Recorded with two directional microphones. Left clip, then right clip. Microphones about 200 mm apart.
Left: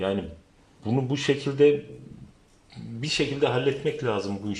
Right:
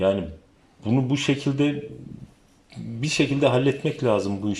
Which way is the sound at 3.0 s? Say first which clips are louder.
Right 3 dB; 15° right (ahead or behind).